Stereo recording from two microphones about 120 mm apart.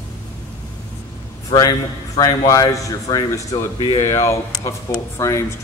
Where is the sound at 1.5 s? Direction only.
35° left (ahead or behind).